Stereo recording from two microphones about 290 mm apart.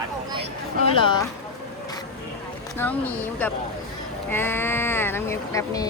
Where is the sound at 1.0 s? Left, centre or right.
Centre.